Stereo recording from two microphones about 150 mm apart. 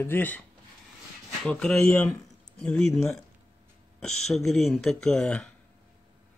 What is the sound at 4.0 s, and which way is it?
Speech, centre (ahead or behind).